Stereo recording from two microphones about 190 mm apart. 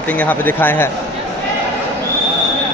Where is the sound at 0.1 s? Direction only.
10° left (ahead or behind).